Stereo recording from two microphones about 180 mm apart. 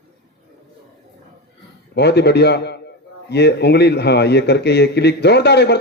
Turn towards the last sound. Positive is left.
turn(degrees=65)  # may be behind; listen again after turning